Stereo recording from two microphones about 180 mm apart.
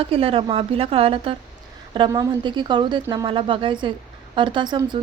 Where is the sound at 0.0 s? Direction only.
30° right (ahead or behind).